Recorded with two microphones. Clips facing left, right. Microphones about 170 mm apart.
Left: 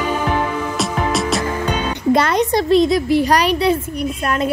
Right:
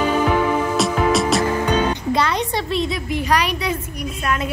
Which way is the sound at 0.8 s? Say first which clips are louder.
Even; centre (ahead or behind).